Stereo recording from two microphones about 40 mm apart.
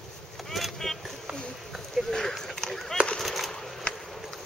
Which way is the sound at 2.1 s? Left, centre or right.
Centre.